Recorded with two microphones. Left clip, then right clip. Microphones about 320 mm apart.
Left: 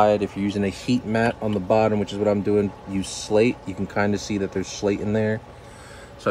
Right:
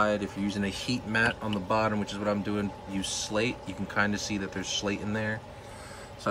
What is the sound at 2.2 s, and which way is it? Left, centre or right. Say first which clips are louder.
Speech: left 12 dB; left.